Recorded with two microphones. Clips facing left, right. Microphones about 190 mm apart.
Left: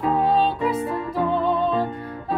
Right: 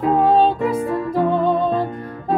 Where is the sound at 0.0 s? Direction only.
45° right (ahead or behind).